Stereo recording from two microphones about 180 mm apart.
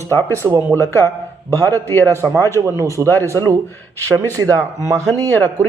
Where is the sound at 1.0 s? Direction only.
20° right (ahead or behind).